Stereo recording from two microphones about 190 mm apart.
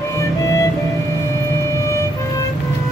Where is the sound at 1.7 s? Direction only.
15° left (ahead or behind).